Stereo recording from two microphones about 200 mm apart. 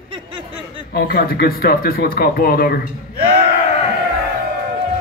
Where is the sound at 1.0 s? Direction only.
50° left (ahead or behind).